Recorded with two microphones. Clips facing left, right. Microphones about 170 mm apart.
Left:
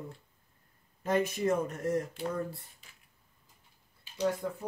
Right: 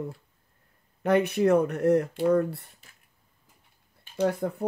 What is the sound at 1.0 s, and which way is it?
Speech, 65° right (ahead or behind).